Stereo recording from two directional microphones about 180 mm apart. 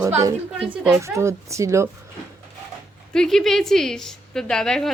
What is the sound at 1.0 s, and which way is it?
Speech, 15° right (ahead or behind).